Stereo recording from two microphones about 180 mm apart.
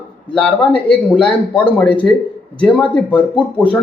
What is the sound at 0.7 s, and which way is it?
A man's voice, 5° left (ahead or behind).